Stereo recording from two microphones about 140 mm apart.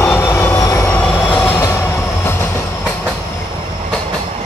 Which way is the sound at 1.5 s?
20° left (ahead or behind).